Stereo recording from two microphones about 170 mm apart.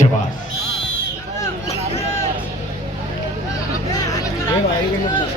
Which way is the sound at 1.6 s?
40° left (ahead or behind).